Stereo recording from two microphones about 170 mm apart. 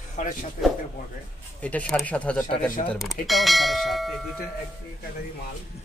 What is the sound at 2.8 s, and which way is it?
Clang, centre (ahead or behind).